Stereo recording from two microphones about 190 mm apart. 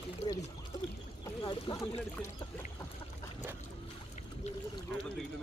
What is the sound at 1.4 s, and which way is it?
Speech, 25° left (ahead or behind).